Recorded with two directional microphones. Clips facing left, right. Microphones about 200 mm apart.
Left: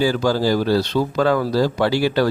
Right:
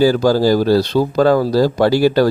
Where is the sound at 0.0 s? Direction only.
40° right (ahead or behind).